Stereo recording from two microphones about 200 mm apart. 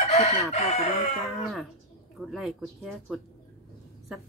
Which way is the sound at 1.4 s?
Centre (ahead or behind).